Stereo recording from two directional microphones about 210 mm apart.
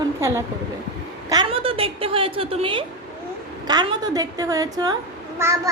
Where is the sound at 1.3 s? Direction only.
25° right (ahead or behind).